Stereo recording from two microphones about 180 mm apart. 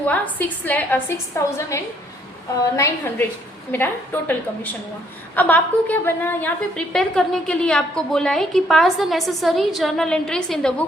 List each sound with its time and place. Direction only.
0.1 s a woman's voice: 10° left (ahead or behind)
2.7 s a woman's voice: 15° left (ahead or behind)
5.3 s a woman's voice: 10° left (ahead or behind)